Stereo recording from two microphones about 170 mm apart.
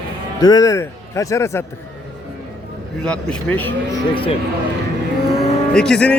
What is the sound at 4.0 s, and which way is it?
Speech, 30° left (ahead or behind).